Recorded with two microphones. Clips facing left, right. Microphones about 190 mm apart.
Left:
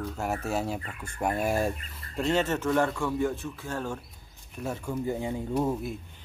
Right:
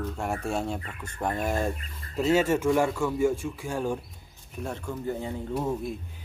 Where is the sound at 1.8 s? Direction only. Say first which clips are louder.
Right 3 dB; centre (ahead or behind).